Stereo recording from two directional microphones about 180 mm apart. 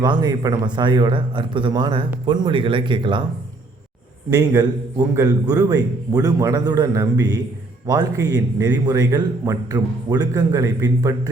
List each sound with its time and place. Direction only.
0.0 s a man's voice: 25° right (ahead or behind)
4.3 s a man's voice: 20° right (ahead or behind)